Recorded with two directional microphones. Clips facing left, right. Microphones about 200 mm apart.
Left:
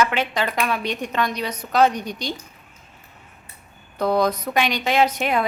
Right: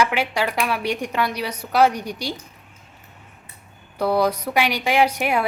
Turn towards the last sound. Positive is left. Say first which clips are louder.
# even
turn(degrees=-10)  # may be behind; listen again after turning